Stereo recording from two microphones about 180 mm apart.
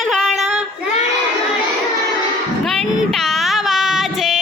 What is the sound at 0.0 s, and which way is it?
Child singing, centre (ahead or behind).